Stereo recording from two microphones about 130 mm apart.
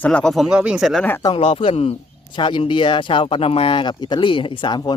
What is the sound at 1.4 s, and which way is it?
Speech, 45° left (ahead or behind).